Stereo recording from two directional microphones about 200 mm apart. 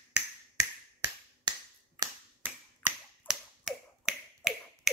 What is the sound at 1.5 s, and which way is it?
Finger snapping, 20° right (ahead or behind).